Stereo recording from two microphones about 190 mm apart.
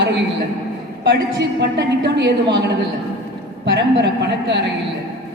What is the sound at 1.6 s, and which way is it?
Speech, 60° right (ahead or behind).